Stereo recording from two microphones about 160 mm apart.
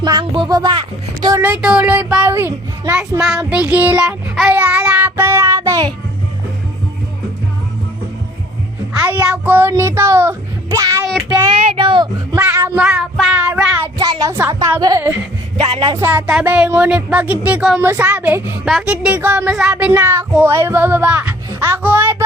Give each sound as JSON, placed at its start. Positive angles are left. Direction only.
{"t": 0.0, "sound": "speech", "side_deg": -25}
{"t": 1.4, "sound": "child singing", "side_deg": -10}
{"t": 3.2, "sound": "child singing", "side_deg": 0}
{"t": 9.0, "sound": "child singing", "side_deg": -10}
{"t": 11.5, "sound": "speech", "side_deg": -35}
{"t": 12.4, "sound": "child singing", "side_deg": -10}
{"t": 13.8, "sound": "speech", "side_deg": -25}
{"t": 14.8, "sound": "speech", "side_deg": -25}
{"t": 15.5, "sound": "music", "side_deg": -40}
{"t": 15.8, "sound": "speech", "side_deg": -25}
{"t": 16.0, "sound": "child singing", "side_deg": -10}